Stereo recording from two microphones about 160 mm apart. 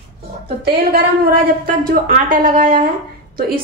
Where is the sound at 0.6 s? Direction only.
75° right (ahead or behind).